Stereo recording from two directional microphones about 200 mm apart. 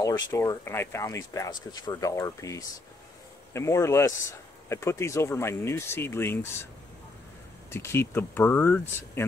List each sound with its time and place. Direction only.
0.3 s speech: 15° left (ahead or behind)
7.7 s speech: 10° left (ahead or behind)